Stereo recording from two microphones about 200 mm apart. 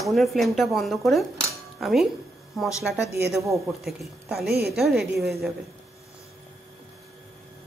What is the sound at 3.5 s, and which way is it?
Speech, centre (ahead or behind).